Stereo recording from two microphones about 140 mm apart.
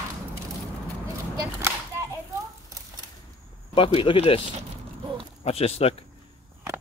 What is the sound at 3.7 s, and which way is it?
Speech, 40° left (ahead or behind).